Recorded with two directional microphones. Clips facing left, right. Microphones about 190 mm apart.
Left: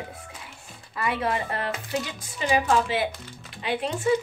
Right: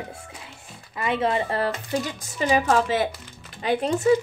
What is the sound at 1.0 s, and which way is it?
Speech, 25° right (ahead or behind).